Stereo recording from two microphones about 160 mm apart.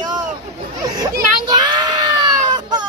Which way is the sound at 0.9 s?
25° right (ahead or behind).